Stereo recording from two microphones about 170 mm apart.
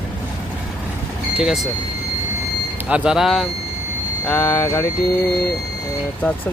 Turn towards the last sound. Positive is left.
turn(degrees=10)  # may be behind; listen again after turning